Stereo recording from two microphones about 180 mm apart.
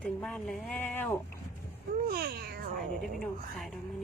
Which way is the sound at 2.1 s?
55° right (ahead or behind).